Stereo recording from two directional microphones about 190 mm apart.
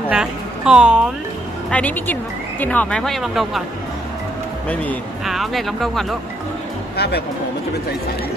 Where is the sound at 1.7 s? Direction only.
10° left (ahead or behind).